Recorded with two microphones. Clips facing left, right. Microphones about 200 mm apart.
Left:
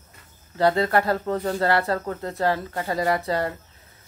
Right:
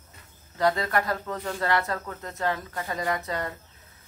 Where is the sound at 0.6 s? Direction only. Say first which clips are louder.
Left 5 dB; 30° left (ahead or behind).